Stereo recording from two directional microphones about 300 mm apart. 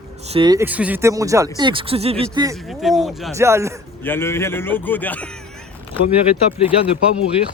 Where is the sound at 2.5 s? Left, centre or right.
Centre.